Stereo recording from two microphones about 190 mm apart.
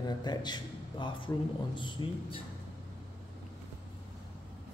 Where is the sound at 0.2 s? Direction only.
20° left (ahead or behind).